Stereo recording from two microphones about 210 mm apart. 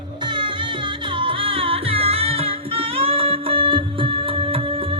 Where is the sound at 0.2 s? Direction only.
25° right (ahead or behind).